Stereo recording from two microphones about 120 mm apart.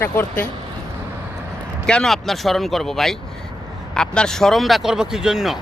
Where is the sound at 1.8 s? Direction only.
5° left (ahead or behind).